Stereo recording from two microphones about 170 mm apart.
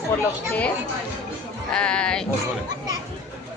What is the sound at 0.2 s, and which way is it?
Speech, 10° left (ahead or behind).